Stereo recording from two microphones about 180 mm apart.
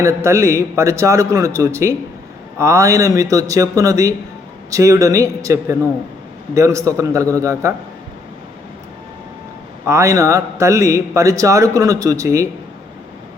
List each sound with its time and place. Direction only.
0.0 s a man's voice: 15° right (ahead or behind)
9.8 s a man's voice: 15° right (ahead or behind)